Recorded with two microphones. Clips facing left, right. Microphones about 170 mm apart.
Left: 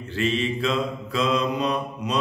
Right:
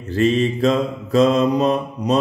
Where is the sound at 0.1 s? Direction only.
40° right (ahead or behind).